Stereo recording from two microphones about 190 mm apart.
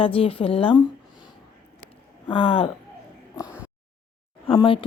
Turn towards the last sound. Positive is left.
turn(degrees=25)  # may be behind; listen again after turning